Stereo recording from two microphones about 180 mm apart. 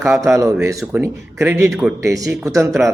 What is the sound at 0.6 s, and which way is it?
A man's voice, 15° right (ahead or behind).